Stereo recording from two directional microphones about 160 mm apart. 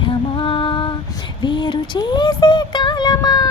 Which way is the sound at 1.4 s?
30° left (ahead or behind).